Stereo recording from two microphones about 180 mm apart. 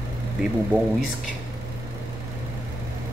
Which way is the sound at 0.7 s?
10° right (ahead or behind).